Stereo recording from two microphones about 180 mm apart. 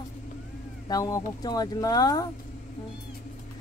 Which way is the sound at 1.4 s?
20° left (ahead or behind).